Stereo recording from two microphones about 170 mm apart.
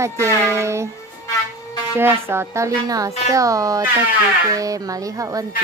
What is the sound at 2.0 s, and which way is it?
Speech, 15° right (ahead or behind).